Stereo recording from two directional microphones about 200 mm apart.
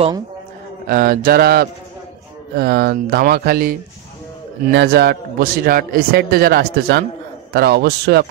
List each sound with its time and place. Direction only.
0.8 s a man's voice: 45° right (ahead or behind)